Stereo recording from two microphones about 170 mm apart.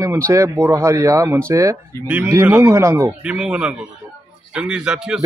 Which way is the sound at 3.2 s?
5° right (ahead or behind).